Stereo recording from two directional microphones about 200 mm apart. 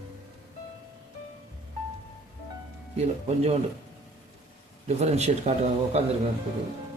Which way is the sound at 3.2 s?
30° right (ahead or behind).